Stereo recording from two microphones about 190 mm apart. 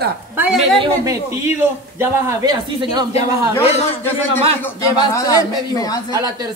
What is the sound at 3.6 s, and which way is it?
Speech, 35° left (ahead or behind).